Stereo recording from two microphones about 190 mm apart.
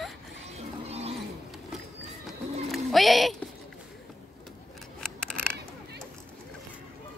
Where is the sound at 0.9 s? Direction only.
35° right (ahead or behind).